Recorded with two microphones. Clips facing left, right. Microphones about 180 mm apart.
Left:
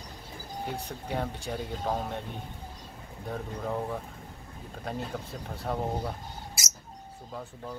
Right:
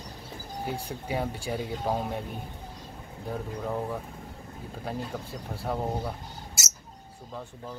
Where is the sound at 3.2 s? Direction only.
5° right (ahead or behind).